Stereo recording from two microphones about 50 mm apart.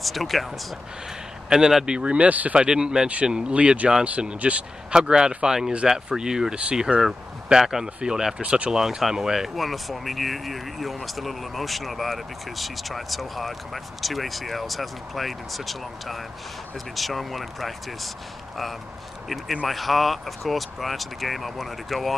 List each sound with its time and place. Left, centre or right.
0.0 s speech: centre
1.5 s speech: centre
1.9 s speech: right
2.5 s speech: centre
9.6 s speech: centre
19.2 s speech: centre